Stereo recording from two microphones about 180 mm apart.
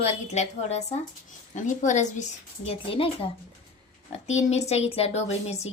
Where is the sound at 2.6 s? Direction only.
30° left (ahead or behind).